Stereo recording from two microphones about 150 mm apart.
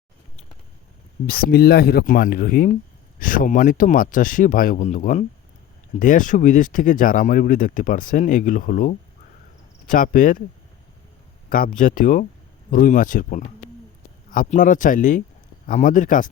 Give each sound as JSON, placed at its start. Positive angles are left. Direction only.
{"t": 1.3, "sound": "speech", "side_deg": 85}
{"t": 11.4, "sound": "speech", "side_deg": 70}